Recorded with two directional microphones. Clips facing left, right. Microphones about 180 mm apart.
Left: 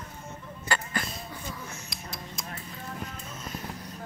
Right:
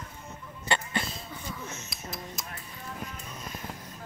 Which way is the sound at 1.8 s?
5° right (ahead or behind).